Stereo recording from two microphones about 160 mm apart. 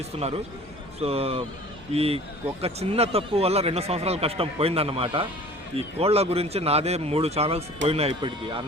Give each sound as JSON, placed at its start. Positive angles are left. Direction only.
{"t": 0.9, "sound": "speech", "side_deg": -40}